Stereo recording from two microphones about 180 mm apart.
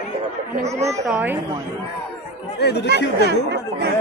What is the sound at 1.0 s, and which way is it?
Speech, 10° right (ahead or behind).